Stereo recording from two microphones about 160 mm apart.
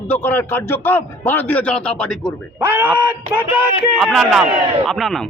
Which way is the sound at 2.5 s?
15° right (ahead or behind).